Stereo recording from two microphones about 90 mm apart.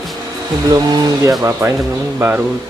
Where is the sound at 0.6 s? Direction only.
45° right (ahead or behind).